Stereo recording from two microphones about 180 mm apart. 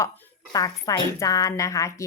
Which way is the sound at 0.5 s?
20° left (ahead or behind).